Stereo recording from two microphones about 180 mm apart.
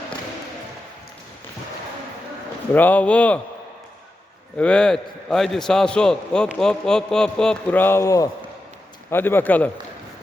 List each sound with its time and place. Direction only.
2.7 s a man's voice: 10° left (ahead or behind)
4.5 s a man's voice: 5° left (ahead or behind)